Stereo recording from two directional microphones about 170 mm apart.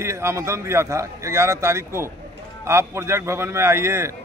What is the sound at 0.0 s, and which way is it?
A man's voice, 15° right (ahead or behind).